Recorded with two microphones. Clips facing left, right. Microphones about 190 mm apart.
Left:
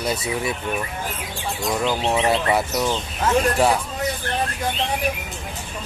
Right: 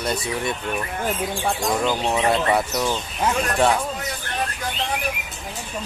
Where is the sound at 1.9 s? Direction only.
Centre (ahead or behind).